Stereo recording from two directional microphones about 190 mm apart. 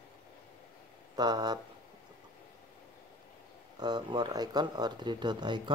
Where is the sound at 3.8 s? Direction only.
20° right (ahead or behind).